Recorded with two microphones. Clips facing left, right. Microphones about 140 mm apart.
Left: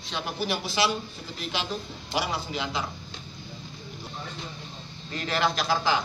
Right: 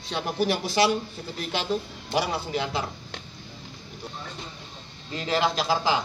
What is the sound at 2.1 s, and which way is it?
Speech, 45° right (ahead or behind).